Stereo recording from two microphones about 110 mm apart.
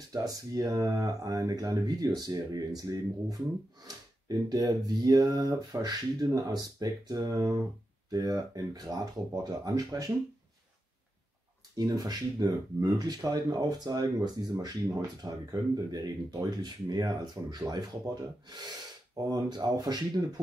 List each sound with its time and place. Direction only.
0.1 s speech: 35° right (ahead or behind)
11.7 s speech: 35° right (ahead or behind)